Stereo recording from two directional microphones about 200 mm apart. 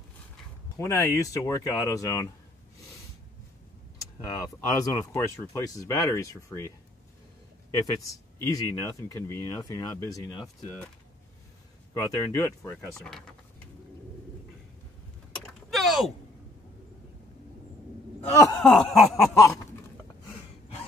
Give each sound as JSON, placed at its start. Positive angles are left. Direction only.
{"t": 0.7, "sound": "speech", "side_deg": 15}
{"t": 4.2, "sound": "speech", "side_deg": 15}
{"t": 7.8, "sound": "speech", "side_deg": 15}
{"t": 11.9, "sound": "speech", "side_deg": 15}
{"t": 15.4, "sound": "door", "side_deg": 0}
{"t": 18.5, "sound": "a sound", "side_deg": 5}